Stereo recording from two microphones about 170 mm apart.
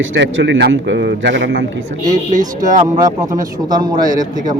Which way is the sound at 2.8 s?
20° right (ahead or behind).